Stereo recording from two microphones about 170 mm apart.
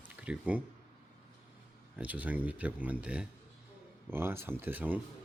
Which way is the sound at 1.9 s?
10° right (ahead or behind).